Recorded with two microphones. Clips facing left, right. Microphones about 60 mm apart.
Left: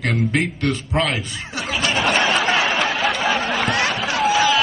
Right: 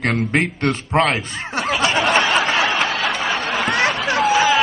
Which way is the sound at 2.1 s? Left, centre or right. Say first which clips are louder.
Left 1 dB; centre.